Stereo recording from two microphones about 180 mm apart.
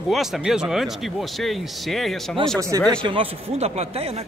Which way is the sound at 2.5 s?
20° right (ahead or behind).